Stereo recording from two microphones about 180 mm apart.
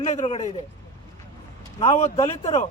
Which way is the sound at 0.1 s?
35° left (ahead or behind).